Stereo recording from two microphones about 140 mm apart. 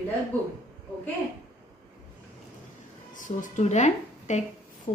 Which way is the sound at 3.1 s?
70° left (ahead or behind).